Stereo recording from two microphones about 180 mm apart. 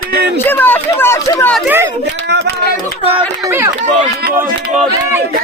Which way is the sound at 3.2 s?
10° right (ahead or behind).